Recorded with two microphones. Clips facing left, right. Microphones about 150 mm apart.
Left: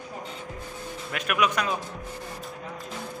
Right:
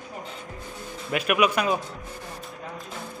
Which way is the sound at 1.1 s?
10° right (ahead or behind).